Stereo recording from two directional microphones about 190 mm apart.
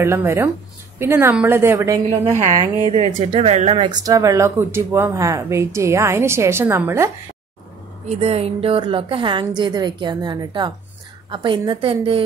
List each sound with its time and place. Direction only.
0.0 s speech: 15° right (ahead or behind)
2.2 s speech: 35° right (ahead or behind); by 7.1 s 10° right (ahead or behind)
8.1 s a woman's voice: 30° right (ahead or behind)